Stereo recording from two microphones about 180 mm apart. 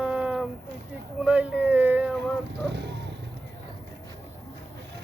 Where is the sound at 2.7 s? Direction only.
70° right (ahead or behind).